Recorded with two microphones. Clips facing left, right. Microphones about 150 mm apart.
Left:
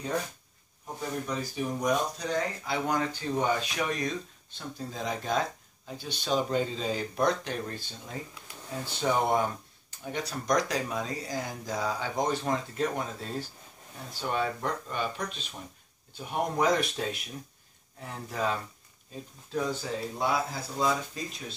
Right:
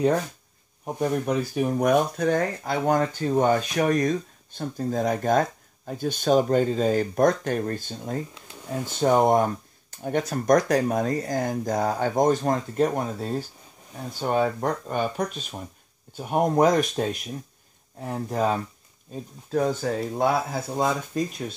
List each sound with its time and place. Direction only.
0.9 s speech: 60° right (ahead or behind)